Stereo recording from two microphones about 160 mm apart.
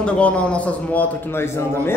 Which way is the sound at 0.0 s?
5° left (ahead or behind).